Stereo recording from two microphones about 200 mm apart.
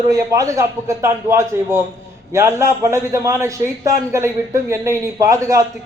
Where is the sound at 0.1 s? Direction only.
15° right (ahead or behind).